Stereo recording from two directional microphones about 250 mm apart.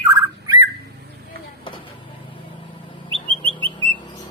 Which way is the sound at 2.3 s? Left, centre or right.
Centre.